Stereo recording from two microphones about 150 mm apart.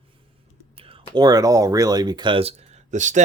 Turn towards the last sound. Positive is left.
turn(degrees=-55)  # may be behind; listen again after turning